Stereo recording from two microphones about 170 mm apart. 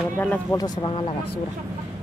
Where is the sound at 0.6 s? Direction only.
25° left (ahead or behind).